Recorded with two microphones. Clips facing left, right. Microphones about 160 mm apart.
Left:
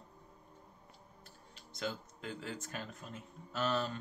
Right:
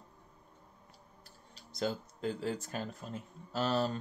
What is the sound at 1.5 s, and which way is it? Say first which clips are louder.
Speech: right 5 dB; 35° right (ahead or behind).